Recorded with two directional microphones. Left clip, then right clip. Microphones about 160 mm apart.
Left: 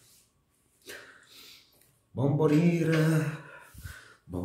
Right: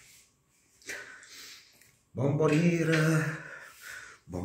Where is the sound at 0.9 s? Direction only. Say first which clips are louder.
Right 5 dB; 25° left (ahead or behind).